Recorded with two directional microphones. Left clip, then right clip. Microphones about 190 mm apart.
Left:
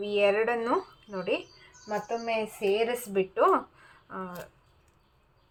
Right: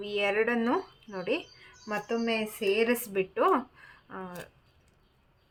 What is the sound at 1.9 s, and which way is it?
Speech, 25° right (ahead or behind).